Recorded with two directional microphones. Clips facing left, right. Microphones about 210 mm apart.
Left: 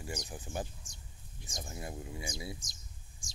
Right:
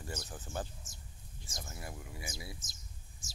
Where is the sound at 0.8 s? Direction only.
5° right (ahead or behind).